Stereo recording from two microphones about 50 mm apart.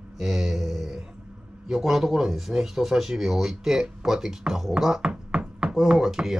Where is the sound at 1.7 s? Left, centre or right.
Centre.